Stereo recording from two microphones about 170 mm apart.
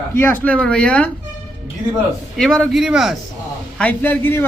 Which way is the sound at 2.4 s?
5° left (ahead or behind).